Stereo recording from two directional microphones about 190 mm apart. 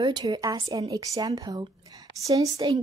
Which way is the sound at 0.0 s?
25° right (ahead or behind).